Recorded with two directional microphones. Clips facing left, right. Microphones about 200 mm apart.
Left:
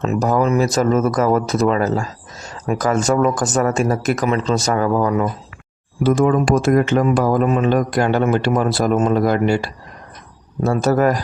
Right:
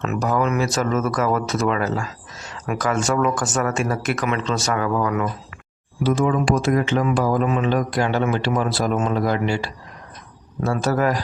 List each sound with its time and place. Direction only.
0.0 s speech: 35° left (ahead or behind)
6.0 s speech: 50° left (ahead or behind)